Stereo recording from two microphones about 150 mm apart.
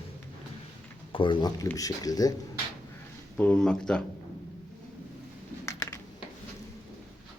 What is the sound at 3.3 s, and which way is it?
Speech, 5° left (ahead or behind).